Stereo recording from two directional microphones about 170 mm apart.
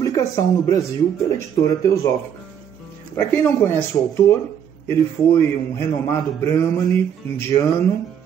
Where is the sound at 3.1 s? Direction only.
15° left (ahead or behind).